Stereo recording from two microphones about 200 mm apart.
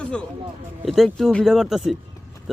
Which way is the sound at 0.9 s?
Centre (ahead or behind).